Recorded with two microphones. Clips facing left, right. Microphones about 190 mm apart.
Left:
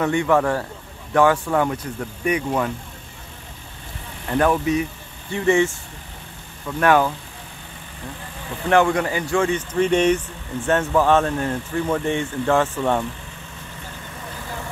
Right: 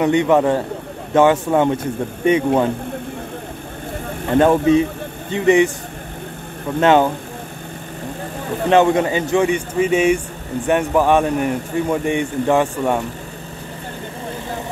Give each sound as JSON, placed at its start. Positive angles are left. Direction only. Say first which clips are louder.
{"t": 0.0, "sound": "speech", "louder": "right 4 dB", "side_deg": -20}
{"t": 4.4, "sound": "speech", "louder": "right 6 dB", "side_deg": -25}
{"t": 6.8, "sound": "speech", "louder": "right 4 dB", "side_deg": -25}
{"t": 8.6, "sound": "speech", "louder": "right 4 dB", "side_deg": -20}